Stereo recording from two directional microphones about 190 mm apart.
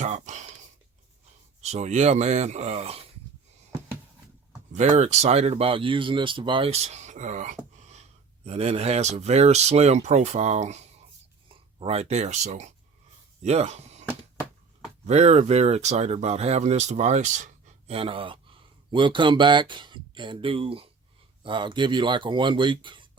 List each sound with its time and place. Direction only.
0.0 s a sound: 40° right (ahead or behind)
1.6 s speech: 35° right (ahead or behind)
4.7 s speech: 35° right (ahead or behind)
15.0 s speech: 35° right (ahead or behind)